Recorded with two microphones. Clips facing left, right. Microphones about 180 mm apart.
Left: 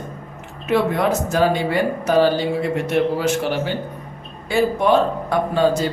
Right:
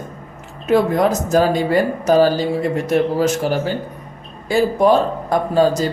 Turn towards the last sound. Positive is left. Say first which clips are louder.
# right 2 dB
turn(degrees=-40)  # may be behind; listen again after turning